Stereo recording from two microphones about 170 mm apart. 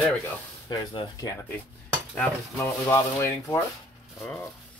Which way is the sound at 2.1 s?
10° left (ahead or behind).